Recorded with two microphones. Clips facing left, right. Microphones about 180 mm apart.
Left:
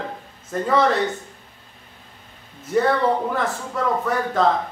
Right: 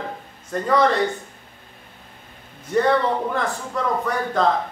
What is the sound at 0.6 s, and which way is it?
Speech, 5° left (ahead or behind).